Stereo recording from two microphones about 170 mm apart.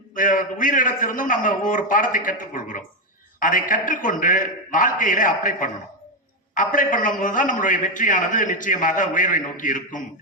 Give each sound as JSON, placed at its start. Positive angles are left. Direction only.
{"t": 0.1, "sound": "a man's voice", "side_deg": 50}